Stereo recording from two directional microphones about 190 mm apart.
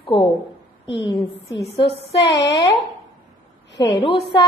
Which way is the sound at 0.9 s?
25° left (ahead or behind).